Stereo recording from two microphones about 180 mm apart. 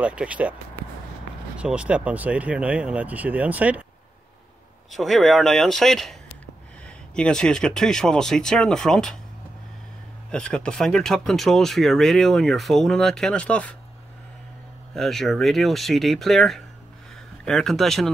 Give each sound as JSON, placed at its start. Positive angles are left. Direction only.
{"t": 0.0, "sound": "speech", "side_deg": -5}
{"t": 1.6, "sound": "speech", "side_deg": -5}
{"t": 4.9, "sound": "speech", "side_deg": 0}
{"t": 7.2, "sound": "speech", "side_deg": 5}
{"t": 10.3, "sound": "speech", "side_deg": 5}
{"t": 15.0, "sound": "speech", "side_deg": 0}